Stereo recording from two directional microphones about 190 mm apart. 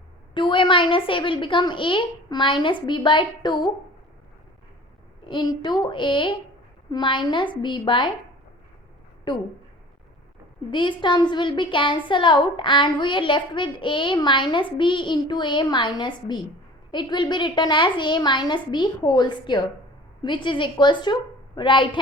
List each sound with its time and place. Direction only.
0.3 s a woman's voice: 25° left (ahead or behind)
5.2 s a woman's voice: 25° left (ahead or behind)
9.3 s a woman's voice: 25° left (ahead or behind)
10.7 s a woman's voice: 25° left (ahead or behind)